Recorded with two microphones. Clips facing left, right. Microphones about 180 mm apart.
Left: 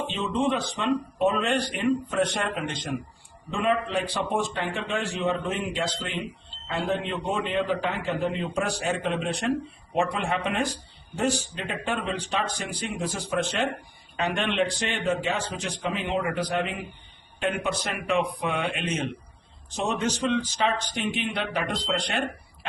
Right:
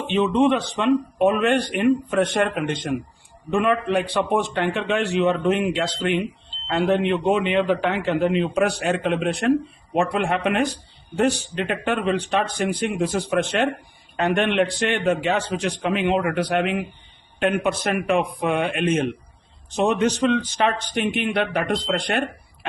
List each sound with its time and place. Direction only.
0.1 s a man's voice: 65° right (ahead or behind)
17.4 s speech: 55° right (ahead or behind)